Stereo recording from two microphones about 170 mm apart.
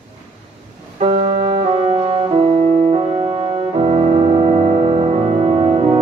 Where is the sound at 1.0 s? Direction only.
35° right (ahead or behind).